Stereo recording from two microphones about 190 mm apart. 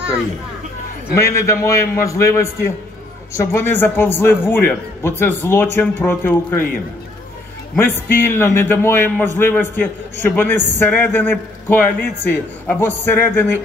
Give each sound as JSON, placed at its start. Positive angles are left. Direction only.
{"t": 1.1, "sound": "a man's voice", "side_deg": 15}
{"t": 7.7, "sound": "a man's voice", "side_deg": 10}